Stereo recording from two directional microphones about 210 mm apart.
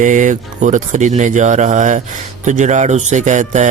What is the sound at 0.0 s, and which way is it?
Speech, 35° right (ahead or behind).